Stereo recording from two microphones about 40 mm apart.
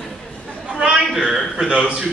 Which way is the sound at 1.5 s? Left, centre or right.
Right.